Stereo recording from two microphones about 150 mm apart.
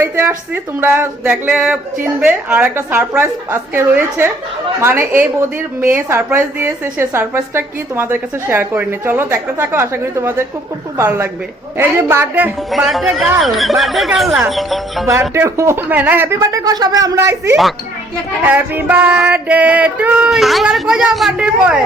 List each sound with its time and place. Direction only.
0.0 s a woman's voice: 15° right (ahead or behind)
12.7 s speech: centre (ahead or behind)
15.3 s a woman's voice: 20° right (ahead or behind)